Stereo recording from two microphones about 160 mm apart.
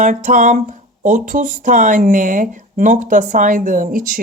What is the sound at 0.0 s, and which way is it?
Speech, 55° right (ahead or behind).